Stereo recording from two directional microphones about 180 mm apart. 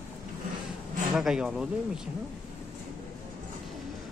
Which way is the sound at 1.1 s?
Centre (ahead or behind).